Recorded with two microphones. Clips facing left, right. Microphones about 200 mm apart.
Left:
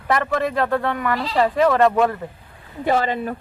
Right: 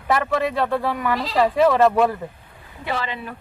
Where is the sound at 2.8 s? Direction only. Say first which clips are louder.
Left 7 dB; 45° left (ahead or behind).